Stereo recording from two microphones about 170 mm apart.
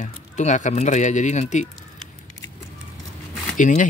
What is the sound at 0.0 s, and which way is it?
Speech, 45° left (ahead or behind).